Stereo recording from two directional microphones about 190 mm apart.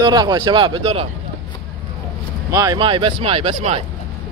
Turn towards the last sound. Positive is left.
turn(degrees=-30)  # may be behind; listen again after turning